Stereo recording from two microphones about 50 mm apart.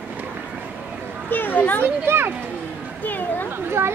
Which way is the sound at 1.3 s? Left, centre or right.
Left.